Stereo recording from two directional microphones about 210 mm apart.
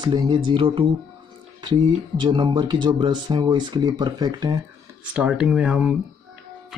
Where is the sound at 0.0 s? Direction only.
20° right (ahead or behind).